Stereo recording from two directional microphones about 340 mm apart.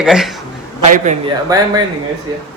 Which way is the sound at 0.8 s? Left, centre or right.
Right.